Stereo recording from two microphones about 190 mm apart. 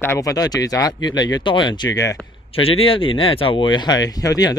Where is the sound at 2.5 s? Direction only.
30° left (ahead or behind).